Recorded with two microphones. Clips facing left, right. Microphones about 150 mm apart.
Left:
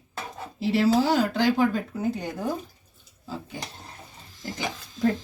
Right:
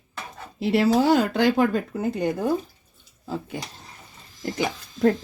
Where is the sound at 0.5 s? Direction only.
60° right (ahead or behind).